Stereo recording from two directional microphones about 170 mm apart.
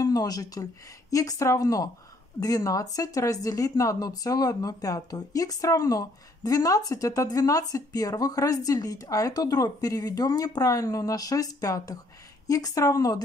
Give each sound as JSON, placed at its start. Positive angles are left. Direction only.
{"t": 0.0, "sound": "speech", "side_deg": 20}